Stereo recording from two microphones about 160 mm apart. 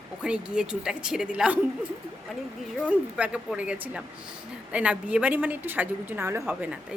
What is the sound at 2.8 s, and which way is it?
A woman's voice, 5° right (ahead or behind).